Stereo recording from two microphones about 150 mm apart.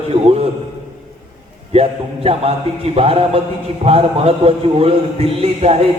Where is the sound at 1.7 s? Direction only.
40° right (ahead or behind).